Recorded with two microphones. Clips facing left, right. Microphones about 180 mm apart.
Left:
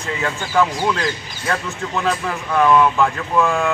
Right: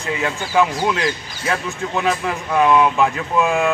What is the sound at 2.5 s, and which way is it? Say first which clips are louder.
Speech: even; 10° right (ahead or behind).